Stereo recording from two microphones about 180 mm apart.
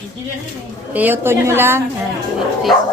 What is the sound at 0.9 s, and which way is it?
Speech, 10° right (ahead or behind).